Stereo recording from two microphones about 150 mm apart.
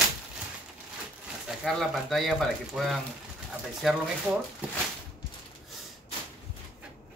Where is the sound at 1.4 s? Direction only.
Centre (ahead or behind).